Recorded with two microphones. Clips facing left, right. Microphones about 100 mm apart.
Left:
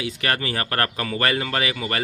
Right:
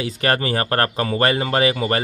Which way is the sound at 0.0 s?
35° right (ahead or behind).